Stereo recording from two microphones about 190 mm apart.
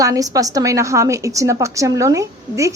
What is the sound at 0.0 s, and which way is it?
A woman's voice, 20° right (ahead or behind).